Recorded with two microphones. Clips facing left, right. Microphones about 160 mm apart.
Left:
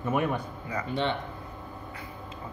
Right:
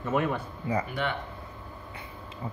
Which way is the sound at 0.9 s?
25° left (ahead or behind).